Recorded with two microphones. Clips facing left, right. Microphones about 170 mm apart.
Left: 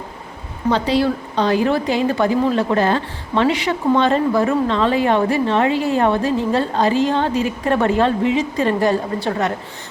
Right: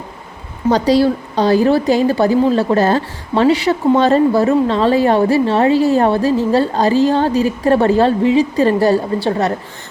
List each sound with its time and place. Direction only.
0.7 s a woman's voice: 35° right (ahead or behind)